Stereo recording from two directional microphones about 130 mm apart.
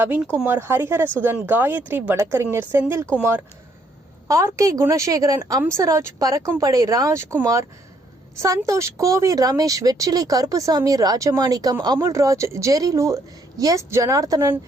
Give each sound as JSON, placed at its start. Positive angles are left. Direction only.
{"t": 0.4, "sound": "speech", "side_deg": -15}
{"t": 4.3, "sound": "speech", "side_deg": -25}